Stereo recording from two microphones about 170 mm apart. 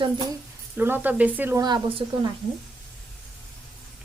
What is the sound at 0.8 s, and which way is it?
Speech, 10° right (ahead or behind).